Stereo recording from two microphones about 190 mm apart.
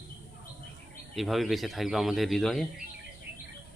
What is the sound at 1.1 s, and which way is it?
Speech, centre (ahead or behind).